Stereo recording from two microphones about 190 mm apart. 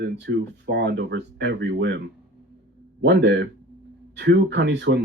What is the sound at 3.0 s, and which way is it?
Speech, 65° right (ahead or behind).